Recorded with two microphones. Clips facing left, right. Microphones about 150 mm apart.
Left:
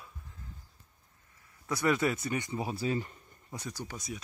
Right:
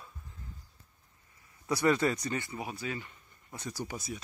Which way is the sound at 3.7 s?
10° right (ahead or behind).